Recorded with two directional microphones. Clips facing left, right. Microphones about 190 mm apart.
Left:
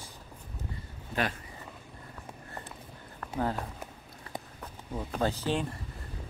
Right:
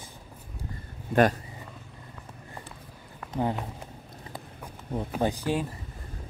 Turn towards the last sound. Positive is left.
turn(degrees=-10)  # may be behind; listen again after turning